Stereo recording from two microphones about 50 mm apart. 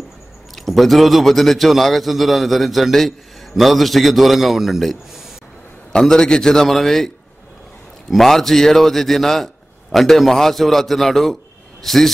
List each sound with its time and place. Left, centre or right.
0.6 s a man's voice: centre
5.9 s a man's voice: centre
8.1 s a man's voice: centre